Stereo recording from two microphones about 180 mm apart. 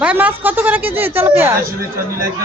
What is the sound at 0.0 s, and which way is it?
Speech, 10° right (ahead or behind).